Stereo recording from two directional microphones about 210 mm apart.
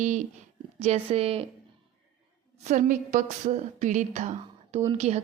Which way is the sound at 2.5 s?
35° right (ahead or behind).